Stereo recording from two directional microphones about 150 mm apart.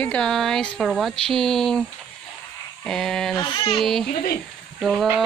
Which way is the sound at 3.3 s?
30° left (ahead or behind).